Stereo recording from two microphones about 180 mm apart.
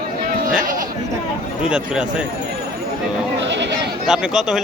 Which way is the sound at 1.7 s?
5° right (ahead or behind).